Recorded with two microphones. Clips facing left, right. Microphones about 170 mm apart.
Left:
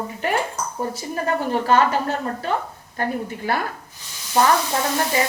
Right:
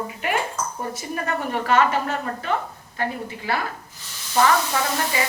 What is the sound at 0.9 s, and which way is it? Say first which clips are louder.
A woman's voice: left 3 dB; 30° left (ahead or behind).